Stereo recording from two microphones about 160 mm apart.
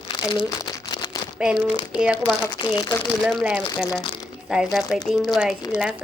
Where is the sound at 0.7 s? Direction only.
25° left (ahead or behind).